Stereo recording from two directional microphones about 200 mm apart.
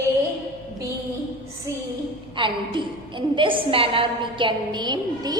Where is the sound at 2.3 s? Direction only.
25° right (ahead or behind).